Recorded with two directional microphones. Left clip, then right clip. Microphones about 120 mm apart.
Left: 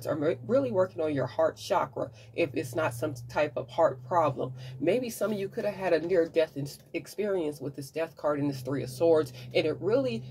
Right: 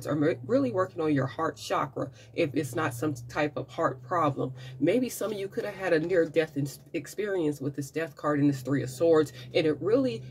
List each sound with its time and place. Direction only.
0.0 s speech: 35° right (ahead or behind)